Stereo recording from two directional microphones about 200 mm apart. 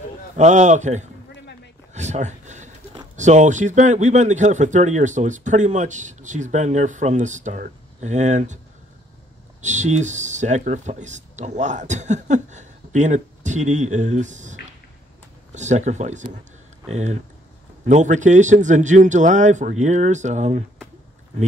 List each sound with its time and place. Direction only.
0.4 s speech: 35° right (ahead or behind)
2.0 s a sound: 35° right (ahead or behind)
3.2 s speech: 35° right (ahead or behind)
9.6 s speech: 35° right (ahead or behind)